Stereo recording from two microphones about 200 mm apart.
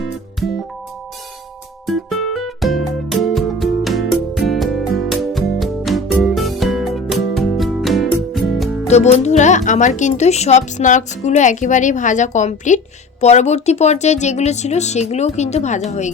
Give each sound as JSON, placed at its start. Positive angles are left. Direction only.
{"t": 1.9, "sound": "music", "side_deg": 0}
{"t": 8.9, "sound": "speech", "side_deg": 35}